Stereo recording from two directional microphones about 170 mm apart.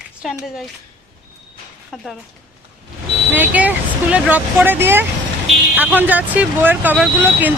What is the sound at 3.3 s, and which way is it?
Speech, 10° right (ahead or behind).